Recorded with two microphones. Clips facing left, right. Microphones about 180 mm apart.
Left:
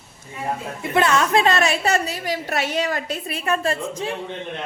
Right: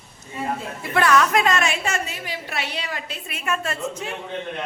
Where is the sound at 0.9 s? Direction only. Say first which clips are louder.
Even; 25° left (ahead or behind).